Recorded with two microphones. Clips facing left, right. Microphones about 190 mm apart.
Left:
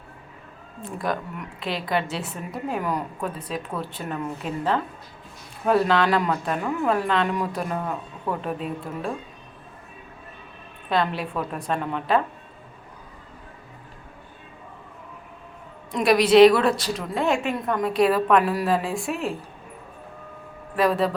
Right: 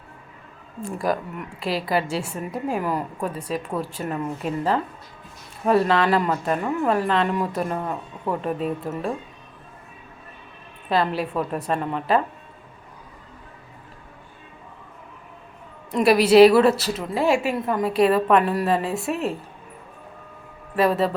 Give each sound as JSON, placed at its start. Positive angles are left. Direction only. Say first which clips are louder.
{"t": 0.8, "sound": "a woman's voice", "louder": "right 3 dB", "side_deg": -10}
{"t": 10.8, "sound": "a woman's voice", "louder": "right 2 dB", "side_deg": 0}
{"t": 15.9, "sound": "a woman's voice", "louder": "right 2 dB", "side_deg": -5}
{"t": 20.7, "sound": "a woman's voice", "louder": "right 1 dB", "side_deg": 0}